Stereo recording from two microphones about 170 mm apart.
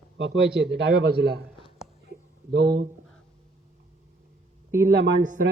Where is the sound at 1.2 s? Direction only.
70° right (ahead or behind).